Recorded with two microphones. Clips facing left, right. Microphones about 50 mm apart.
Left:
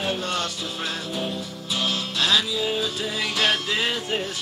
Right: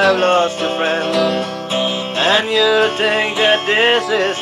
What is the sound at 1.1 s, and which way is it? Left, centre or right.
Music, right.